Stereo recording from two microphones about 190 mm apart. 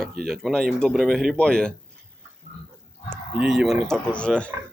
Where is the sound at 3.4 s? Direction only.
Centre (ahead or behind).